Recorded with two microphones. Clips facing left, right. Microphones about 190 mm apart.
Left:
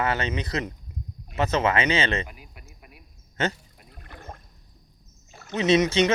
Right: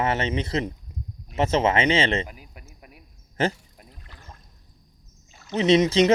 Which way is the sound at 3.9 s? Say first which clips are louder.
Left 10 dB; 55° left (ahead or behind).